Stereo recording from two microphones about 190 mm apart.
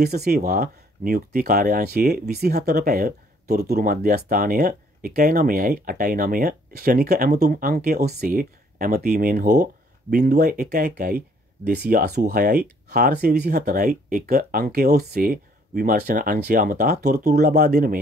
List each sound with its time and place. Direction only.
0.0 s speech: 55° right (ahead or behind)
7.4 s speech: 45° right (ahead or behind)
10.1 s speech: 55° right (ahead or behind)